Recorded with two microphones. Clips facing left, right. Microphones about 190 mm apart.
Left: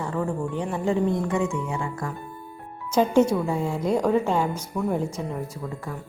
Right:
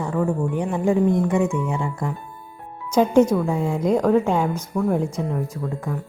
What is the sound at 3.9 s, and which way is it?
Speech, 10° left (ahead or behind).